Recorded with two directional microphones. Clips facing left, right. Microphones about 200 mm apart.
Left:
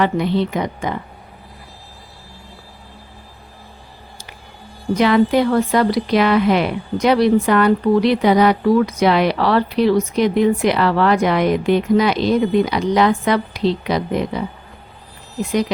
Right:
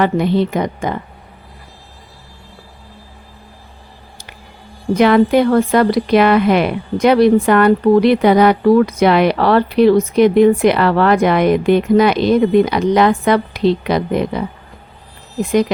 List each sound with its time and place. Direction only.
0.0 s a woman's voice: 50° right (ahead or behind)
4.9 s speech: 55° right (ahead or behind)